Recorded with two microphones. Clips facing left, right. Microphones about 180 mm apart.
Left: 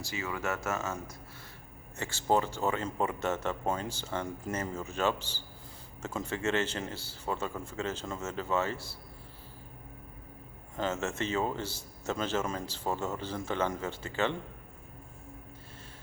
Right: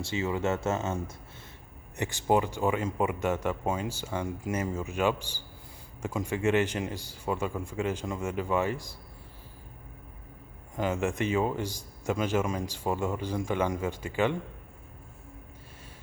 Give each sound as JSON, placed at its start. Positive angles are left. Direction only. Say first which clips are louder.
{"t": 0.0, "sound": "speech", "louder": "right 6 dB", "side_deg": -25}
{"t": 2.0, "sound": "a man's voice", "louder": "right 3 dB", "side_deg": -15}
{"t": 10.8, "sound": "a man's voice", "louder": "right 4 dB", "side_deg": -15}